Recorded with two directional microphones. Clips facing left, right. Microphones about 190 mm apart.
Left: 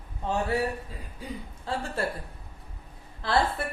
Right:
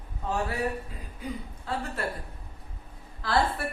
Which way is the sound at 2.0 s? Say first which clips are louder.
Left 5 dB; 30° left (ahead or behind).